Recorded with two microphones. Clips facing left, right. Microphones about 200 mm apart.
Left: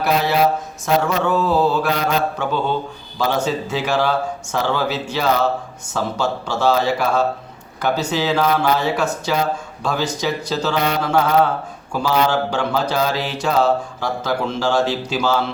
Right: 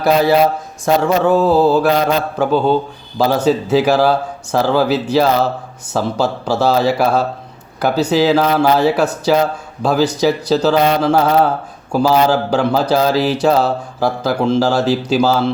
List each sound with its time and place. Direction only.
1.0 s speech: 35° right (ahead or behind)